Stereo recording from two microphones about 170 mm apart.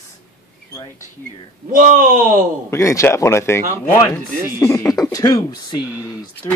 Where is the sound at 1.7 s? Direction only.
55° right (ahead or behind).